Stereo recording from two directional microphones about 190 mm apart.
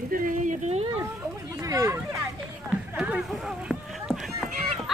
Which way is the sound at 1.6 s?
15° right (ahead or behind).